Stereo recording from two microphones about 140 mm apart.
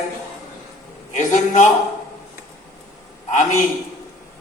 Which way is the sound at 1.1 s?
60° left (ahead or behind).